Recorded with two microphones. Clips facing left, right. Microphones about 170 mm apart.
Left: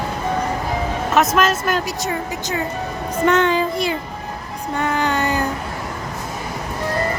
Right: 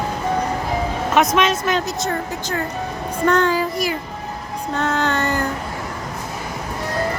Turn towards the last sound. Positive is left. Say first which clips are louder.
# left 1 dB
turn(degrees=15)  # may be behind; listen again after turning